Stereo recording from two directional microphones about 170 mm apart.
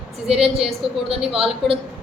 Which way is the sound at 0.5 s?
35° right (ahead or behind).